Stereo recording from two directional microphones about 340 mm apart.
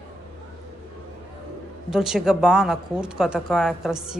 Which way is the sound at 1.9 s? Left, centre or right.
Centre.